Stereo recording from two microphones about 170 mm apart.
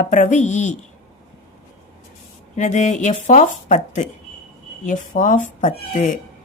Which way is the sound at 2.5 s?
45° left (ahead or behind).